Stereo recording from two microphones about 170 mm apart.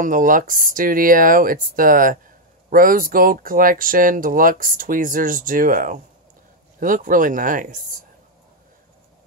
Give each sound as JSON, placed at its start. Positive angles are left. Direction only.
{"t": 0.0, "sound": "speech", "side_deg": -50}